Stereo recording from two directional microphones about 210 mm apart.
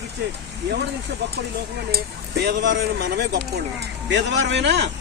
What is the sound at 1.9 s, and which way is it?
Speech, 50° right (ahead or behind).